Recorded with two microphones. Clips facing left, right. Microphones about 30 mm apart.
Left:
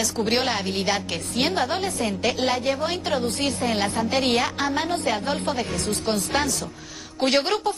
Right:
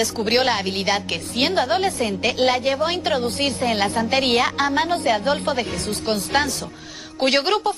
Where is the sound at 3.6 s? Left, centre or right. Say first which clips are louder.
Right 4 dB; centre.